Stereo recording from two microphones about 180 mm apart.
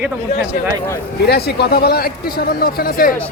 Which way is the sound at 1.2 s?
60° left (ahead or behind).